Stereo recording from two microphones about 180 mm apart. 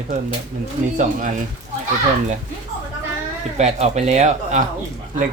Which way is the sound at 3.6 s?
40° right (ahead or behind).